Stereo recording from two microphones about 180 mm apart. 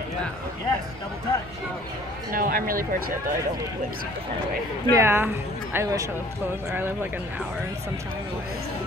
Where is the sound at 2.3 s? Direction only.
50° right (ahead or behind).